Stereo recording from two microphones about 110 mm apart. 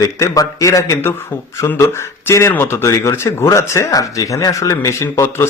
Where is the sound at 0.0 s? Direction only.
30° left (ahead or behind).